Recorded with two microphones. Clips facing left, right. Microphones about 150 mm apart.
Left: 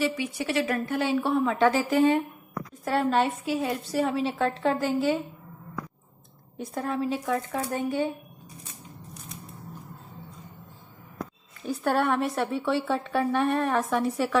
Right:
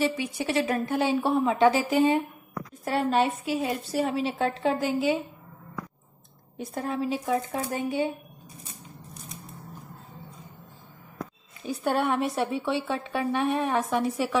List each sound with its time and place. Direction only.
0.6 s a woman's voice: 20° right (ahead or behind)
6.7 s a woman's voice: 15° right (ahead or behind)
11.6 s a woman's voice: 5° right (ahead or behind)